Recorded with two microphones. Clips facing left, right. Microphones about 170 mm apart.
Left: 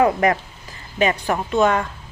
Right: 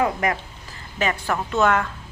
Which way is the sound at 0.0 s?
35° left (ahead or behind).